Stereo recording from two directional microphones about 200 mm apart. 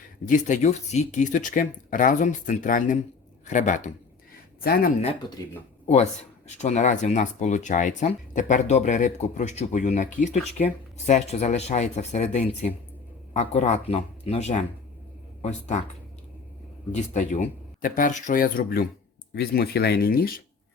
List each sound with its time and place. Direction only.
0.3 s speech: 40° left (ahead or behind)
4.6 s speech: 50° left (ahead or behind)
5.8 s speech: 35° left (ahead or behind)
16.9 s speech: 35° left (ahead or behind)